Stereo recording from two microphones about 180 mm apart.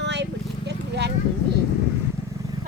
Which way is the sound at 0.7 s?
70° right (ahead or behind).